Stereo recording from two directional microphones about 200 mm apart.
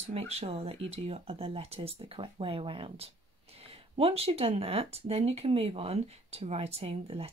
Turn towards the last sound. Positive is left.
turn(degrees=-30)  # may be behind; listen again after turning